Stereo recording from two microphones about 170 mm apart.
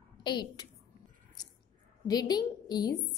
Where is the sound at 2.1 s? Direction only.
25° left (ahead or behind).